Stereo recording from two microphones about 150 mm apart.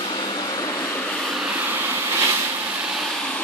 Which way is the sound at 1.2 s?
Centre (ahead or behind).